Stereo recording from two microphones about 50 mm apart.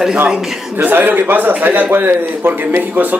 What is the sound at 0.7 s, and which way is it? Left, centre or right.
A man's voice, right.